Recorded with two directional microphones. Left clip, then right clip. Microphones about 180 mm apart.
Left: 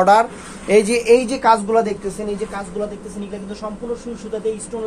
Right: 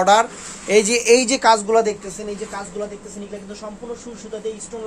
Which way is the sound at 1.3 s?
70° right (ahead or behind).